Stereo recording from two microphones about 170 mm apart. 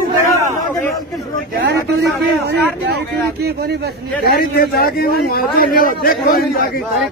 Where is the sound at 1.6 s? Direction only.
75° right (ahead or behind).